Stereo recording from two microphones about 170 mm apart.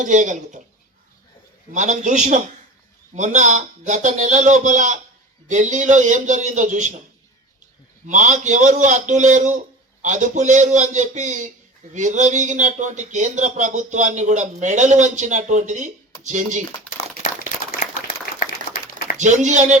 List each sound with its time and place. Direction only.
0.0 s speech: 45° right (ahead or behind)
1.7 s speech: 45° right (ahead or behind)
8.0 s speech: 45° right (ahead or behind)
17.7 s applause: 55° left (ahead or behind)
19.2 s speech: 45° right (ahead or behind)